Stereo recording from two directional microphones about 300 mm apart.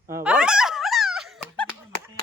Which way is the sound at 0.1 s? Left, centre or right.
Centre.